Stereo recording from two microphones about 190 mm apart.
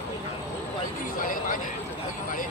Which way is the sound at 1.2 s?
45° left (ahead or behind).